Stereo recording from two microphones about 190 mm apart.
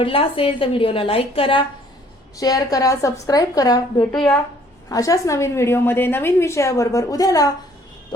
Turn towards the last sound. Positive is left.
turn(degrees=20)  # may be behind; listen again after turning